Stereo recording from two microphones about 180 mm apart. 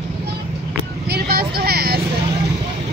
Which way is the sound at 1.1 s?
60° right (ahead or behind).